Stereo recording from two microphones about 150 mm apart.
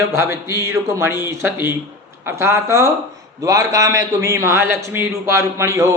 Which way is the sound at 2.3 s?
15° right (ahead or behind).